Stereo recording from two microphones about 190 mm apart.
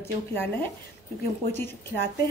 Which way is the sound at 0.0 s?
10° left (ahead or behind).